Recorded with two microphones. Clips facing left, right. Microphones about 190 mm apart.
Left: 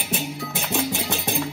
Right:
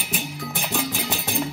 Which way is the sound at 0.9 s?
15° left (ahead or behind).